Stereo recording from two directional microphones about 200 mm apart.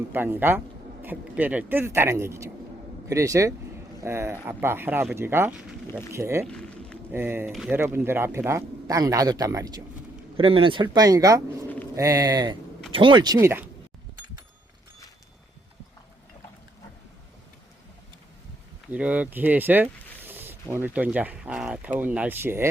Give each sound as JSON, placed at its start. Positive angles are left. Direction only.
{"t": 0.1, "sound": "speech", "side_deg": -10}
{"t": 5.9, "sound": "speech", "side_deg": 10}
{"t": 6.1, "sound": "speech", "side_deg": -15}
{"t": 6.4, "sound": "a sound", "side_deg": 5}
{"t": 7.1, "sound": "speech", "side_deg": -10}
{"t": 18.9, "sound": "speech", "side_deg": -5}